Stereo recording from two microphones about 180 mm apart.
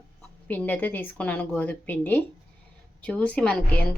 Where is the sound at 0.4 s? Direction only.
10° left (ahead or behind).